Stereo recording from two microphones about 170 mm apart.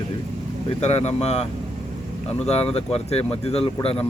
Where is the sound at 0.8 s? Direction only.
40° left (ahead or behind).